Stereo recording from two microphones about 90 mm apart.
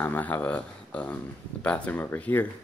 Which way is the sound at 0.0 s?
20° left (ahead or behind).